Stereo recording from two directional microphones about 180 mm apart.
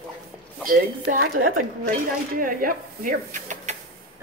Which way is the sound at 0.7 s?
55° right (ahead or behind).